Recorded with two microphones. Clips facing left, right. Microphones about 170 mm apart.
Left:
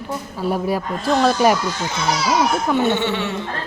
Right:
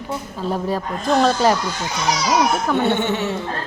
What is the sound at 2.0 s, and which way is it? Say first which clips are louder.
Speech: even; 15° right (ahead or behind).